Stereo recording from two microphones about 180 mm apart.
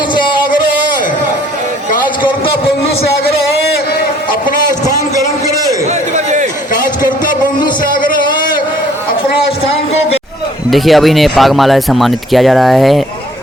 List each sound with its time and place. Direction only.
10.7 s speech: centre (ahead or behind)